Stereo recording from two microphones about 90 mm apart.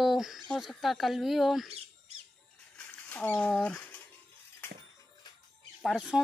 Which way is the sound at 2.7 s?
15° left (ahead or behind).